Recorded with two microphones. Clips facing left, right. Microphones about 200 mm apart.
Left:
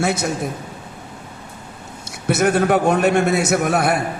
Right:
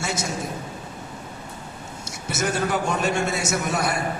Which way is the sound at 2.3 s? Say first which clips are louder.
Left 8 dB; 60° left (ahead or behind).